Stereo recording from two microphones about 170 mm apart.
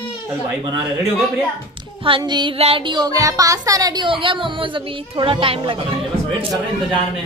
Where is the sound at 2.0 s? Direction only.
30° right (ahead or behind).